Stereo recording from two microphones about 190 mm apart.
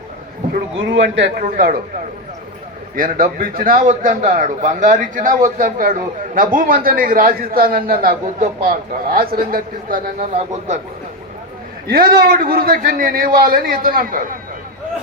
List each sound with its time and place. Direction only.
0.5 s speech: 70° right (ahead or behind)
1.4 s a man's voice: 45° right (ahead or behind)
2.9 s a man's voice: 45° right (ahead or behind)
11.9 s a man's voice: 50° right (ahead or behind)